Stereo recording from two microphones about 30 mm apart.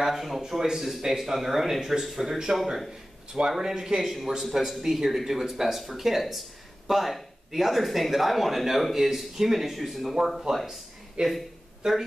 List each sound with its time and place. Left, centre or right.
0.0 s speech: centre
0.4 s speech: centre
11.2 s speech: right